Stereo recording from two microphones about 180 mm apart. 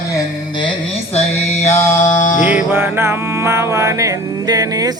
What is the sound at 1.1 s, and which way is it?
Mantra, 40° left (ahead or behind).